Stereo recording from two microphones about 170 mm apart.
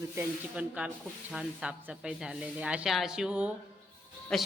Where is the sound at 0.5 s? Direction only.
5° right (ahead or behind).